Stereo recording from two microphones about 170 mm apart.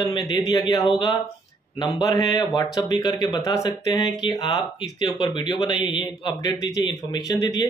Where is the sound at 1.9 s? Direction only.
20° left (ahead or behind).